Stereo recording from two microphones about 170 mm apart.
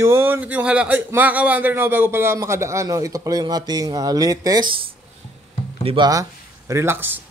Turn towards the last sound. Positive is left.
turn(degrees=-15)  # may be behind; listen again after turning